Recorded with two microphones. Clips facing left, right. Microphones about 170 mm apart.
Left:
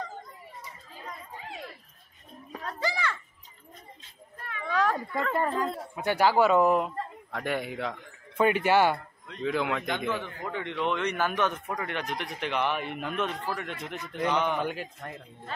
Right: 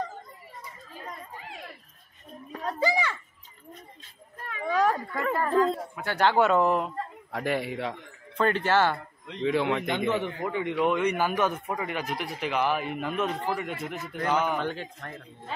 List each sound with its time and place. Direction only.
2.6 s a child's voice: 15° right (ahead or behind)
4.6 s speech: 10° right (ahead or behind)
5.3 s speech: 20° left (ahead or behind)
6.1 s speech: 5° left (ahead or behind)
8.4 s a man's voice: 10° left (ahead or behind)
9.4 s speech: centre (ahead or behind)
10.0 s a man's voice: 15° right (ahead or behind)
14.6 s a man's voice: 10° left (ahead or behind)